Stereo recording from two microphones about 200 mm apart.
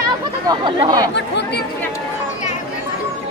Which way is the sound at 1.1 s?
55° left (ahead or behind).